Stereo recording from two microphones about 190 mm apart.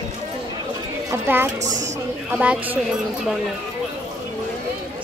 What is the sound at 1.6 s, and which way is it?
Speech, 40° right (ahead or behind).